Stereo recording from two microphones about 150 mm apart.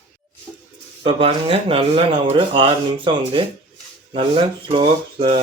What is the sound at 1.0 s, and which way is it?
Speech, 40° right (ahead or behind).